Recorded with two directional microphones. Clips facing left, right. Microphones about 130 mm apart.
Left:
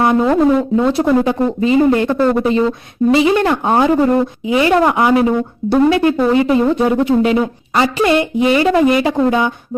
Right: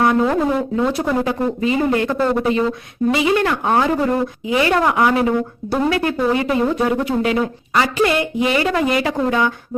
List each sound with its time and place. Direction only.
0.0 s speech: 25° left (ahead or behind)